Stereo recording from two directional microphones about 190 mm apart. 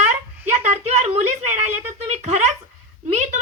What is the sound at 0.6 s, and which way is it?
Speech, 35° right (ahead or behind).